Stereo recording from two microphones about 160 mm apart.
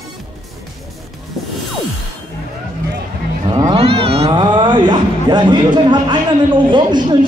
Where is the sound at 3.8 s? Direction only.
35° right (ahead or behind).